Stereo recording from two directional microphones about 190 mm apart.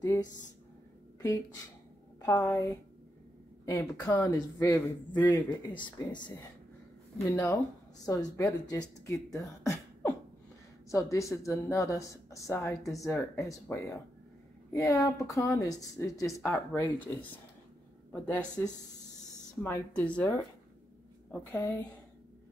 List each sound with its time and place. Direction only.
0.0 s speech: 15° left (ahead or behind)
2.2 s a woman's voice: 15° left (ahead or behind)
7.2 s a woman's voice: 15° left (ahead or behind)
9.4 s beatboxing: 15° left (ahead or behind)
10.9 s a woman's voice: 15° left (ahead or behind)
18.6 s a woman's voice: 10° left (ahead or behind)